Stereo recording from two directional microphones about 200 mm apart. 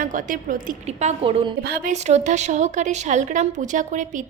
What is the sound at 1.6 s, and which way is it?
Speech, 50° right (ahead or behind).